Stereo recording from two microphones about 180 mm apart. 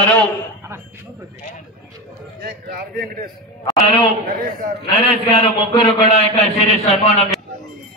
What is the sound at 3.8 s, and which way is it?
A man's voice, 30° left (ahead or behind).